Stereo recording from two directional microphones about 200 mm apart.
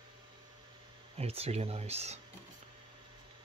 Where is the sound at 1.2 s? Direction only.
30° right (ahead or behind).